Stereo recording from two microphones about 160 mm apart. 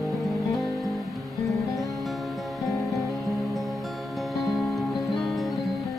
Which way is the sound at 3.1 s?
Centre (ahead or behind).